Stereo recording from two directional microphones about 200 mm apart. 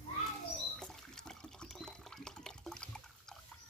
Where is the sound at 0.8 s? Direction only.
5° left (ahead or behind).